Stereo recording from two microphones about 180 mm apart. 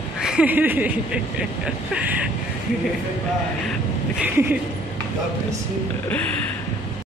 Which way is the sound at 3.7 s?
5° right (ahead or behind).